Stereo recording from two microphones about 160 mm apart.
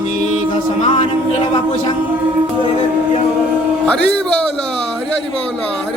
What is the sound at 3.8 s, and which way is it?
Speech, 5° left (ahead or behind).